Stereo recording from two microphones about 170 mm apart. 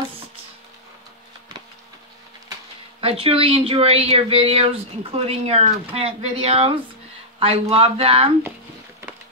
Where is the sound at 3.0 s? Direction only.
35° right (ahead or behind).